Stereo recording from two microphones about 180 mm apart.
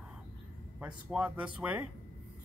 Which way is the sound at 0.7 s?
5° right (ahead or behind).